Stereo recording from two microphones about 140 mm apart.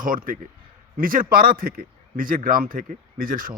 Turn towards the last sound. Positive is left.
turn(degrees=-90)